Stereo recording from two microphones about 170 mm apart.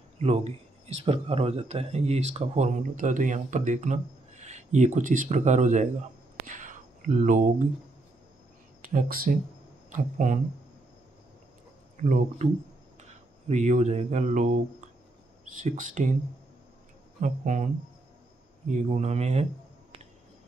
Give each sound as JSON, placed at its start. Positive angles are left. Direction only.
{"t": 0.2, "sound": "speech", "side_deg": -40}
{"t": 6.4, "sound": "a sound", "side_deg": -50}
{"t": 8.9, "sound": "speech", "side_deg": -60}
{"t": 12.0, "sound": "speech", "side_deg": -45}
{"t": 13.5, "sound": "speech", "side_deg": -40}
{"t": 15.6, "sound": "speech", "side_deg": -45}
{"t": 17.2, "sound": "speech", "side_deg": -50}
{"t": 18.7, "sound": "speech", "side_deg": -45}